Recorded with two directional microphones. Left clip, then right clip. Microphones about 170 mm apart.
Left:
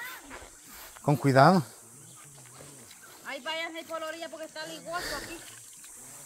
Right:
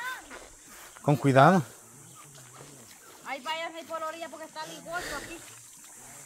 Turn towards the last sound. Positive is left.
turn(degrees=15)  # may be behind; listen again after turning